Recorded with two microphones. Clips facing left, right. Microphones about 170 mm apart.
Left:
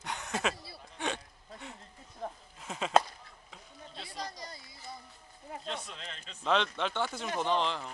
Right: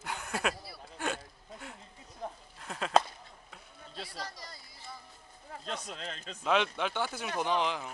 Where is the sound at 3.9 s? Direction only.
20° left (ahead or behind).